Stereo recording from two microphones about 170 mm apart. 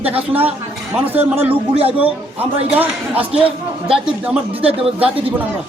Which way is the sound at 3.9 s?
5° right (ahead or behind).